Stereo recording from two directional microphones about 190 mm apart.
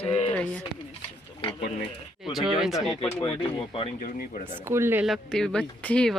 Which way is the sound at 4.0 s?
40° left (ahead or behind).